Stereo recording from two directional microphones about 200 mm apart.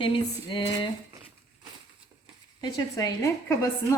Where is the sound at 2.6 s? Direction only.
20° left (ahead or behind).